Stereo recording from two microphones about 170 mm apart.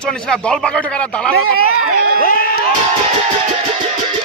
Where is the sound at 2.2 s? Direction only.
60° left (ahead or behind).